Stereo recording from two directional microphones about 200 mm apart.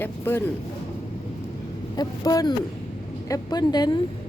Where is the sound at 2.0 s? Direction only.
20° left (ahead or behind).